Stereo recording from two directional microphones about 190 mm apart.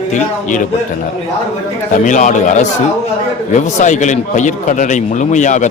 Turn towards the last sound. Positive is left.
turn(degrees=40)  # may be behind; listen again after turning